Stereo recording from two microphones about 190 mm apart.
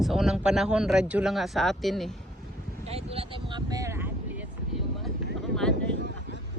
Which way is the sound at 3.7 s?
15° right (ahead or behind).